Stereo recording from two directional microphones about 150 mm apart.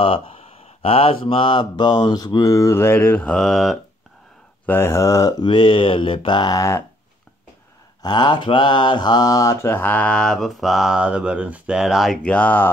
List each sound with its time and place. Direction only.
0.0 s mantra: 40° left (ahead or behind); by 3.8 s centre (ahead or behind)
4.6 s mantra: 15° left (ahead or behind)
8.0 s mantra: 30° left (ahead or behind); by 12.7 s 10° left (ahead or behind)